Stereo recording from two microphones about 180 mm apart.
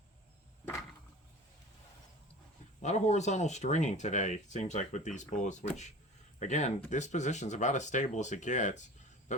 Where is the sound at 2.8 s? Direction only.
40° left (ahead or behind).